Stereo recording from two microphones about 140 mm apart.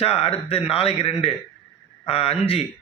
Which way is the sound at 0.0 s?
45° left (ahead or behind).